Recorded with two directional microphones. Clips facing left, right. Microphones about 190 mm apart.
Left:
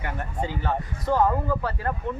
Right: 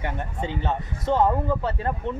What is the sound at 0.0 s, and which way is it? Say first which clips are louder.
Speech: even; 20° right (ahead or behind).